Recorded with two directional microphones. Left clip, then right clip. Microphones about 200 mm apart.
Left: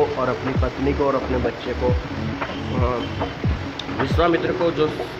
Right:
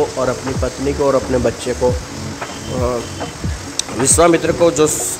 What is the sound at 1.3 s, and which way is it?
Speech, 35° right (ahead or behind).